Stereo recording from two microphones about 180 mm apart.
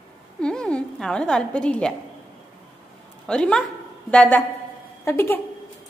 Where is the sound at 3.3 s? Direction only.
5° left (ahead or behind).